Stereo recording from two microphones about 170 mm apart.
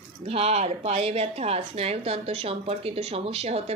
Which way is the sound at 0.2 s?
35° right (ahead or behind).